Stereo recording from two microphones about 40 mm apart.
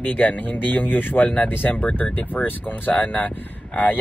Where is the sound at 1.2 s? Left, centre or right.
Left.